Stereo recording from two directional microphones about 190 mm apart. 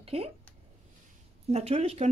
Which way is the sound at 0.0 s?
30° right (ahead or behind).